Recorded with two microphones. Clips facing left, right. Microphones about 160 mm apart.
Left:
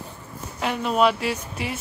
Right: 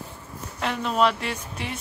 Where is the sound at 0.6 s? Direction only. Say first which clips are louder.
Left 2 dB; 5° left (ahead or behind).